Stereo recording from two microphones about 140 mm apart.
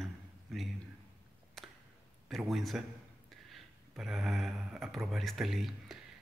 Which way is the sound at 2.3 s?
Centre (ahead or behind).